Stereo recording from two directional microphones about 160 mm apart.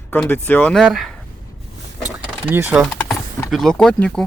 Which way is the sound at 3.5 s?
5° left (ahead or behind).